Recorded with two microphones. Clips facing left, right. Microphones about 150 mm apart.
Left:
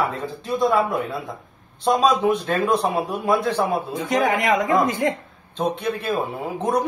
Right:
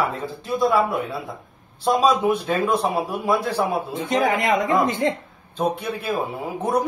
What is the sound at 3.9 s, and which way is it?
Speech, 25° right (ahead or behind).